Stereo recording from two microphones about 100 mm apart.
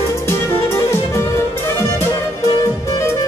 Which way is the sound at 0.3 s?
25° left (ahead or behind).